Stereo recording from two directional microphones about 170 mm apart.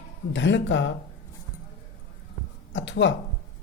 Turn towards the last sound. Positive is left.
turn(degrees=90)